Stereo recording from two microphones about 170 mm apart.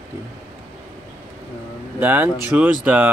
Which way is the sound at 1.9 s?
10° right (ahead or behind).